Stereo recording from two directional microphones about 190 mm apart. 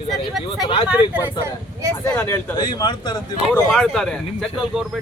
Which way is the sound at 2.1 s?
15° left (ahead or behind).